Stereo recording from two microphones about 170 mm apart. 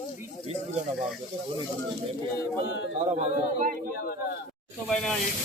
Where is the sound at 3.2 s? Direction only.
50° right (ahead or behind).